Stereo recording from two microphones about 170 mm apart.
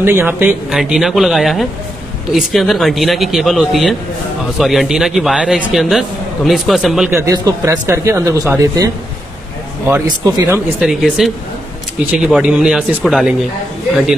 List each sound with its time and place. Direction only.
0.0 s a man's voice: 15° right (ahead or behind)
7.1 s a man's voice: 15° right (ahead or behind)
10.0 s speech: 25° right (ahead or behind)
10.5 s a man's voice: 5° right (ahead or behind)